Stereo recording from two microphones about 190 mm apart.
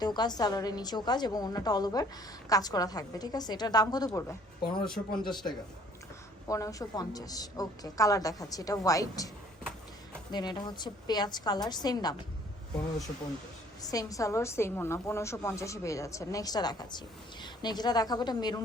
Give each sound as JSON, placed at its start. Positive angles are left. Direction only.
{"t": 0.0, "sound": "a woman's voice", "side_deg": 20}
{"t": 10.3, "sound": "a woman's voice", "side_deg": 20}
{"t": 13.8, "sound": "a woman's voice", "side_deg": 20}